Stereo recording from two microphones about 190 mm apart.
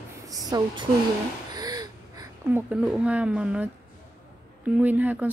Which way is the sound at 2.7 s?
5° right (ahead or behind).